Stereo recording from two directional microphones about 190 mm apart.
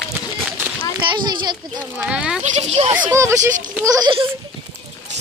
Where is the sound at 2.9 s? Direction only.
15° right (ahead or behind).